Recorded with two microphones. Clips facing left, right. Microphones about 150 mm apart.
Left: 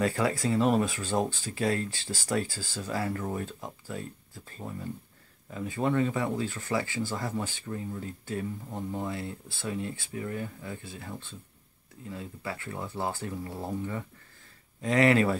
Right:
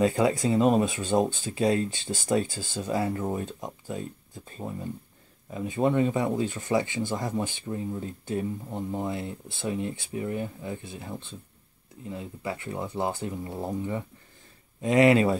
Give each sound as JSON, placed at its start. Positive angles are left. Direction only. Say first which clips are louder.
{"t": 0.0, "sound": "speech", "louder": "right 4 dB", "side_deg": -20}